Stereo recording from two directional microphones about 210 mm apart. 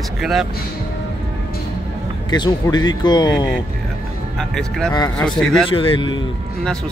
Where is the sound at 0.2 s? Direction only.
Centre (ahead or behind).